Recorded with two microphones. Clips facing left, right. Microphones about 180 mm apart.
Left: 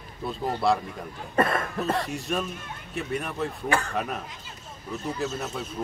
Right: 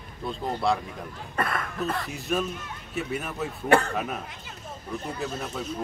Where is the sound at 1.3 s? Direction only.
25° left (ahead or behind).